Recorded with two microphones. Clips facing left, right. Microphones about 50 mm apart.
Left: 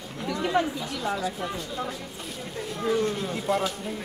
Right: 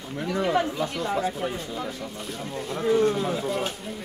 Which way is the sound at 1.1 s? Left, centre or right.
Right.